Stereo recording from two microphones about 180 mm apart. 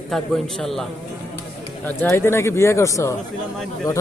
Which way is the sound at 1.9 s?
10° left (ahead or behind).